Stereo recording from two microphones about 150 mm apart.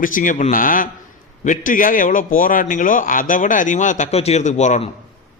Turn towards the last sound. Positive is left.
turn(degrees=50)  # may be behind; listen again after turning